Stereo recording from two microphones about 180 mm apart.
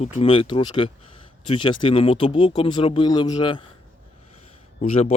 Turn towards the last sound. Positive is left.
turn(degrees=35)  # may be behind; listen again after turning